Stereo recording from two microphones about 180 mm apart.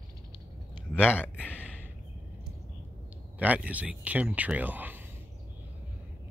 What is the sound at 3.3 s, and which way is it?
Speech, 10° right (ahead or behind).